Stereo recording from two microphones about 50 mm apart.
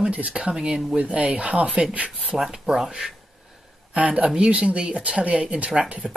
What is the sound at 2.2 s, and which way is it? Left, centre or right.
Speech, centre.